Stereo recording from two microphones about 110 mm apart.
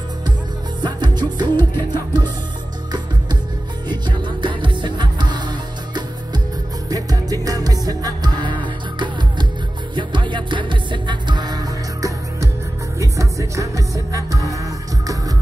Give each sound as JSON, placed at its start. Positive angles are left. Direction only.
{"t": 0.8, "sound": "music", "side_deg": -45}
{"t": 3.9, "sound": "music", "side_deg": -45}